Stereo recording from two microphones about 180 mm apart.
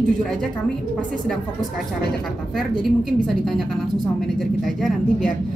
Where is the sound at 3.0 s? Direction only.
Centre (ahead or behind).